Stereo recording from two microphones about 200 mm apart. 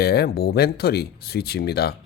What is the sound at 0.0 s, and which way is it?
Speech, 50° left (ahead or behind).